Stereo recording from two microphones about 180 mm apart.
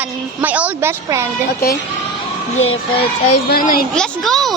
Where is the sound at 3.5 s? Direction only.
50° left (ahead or behind).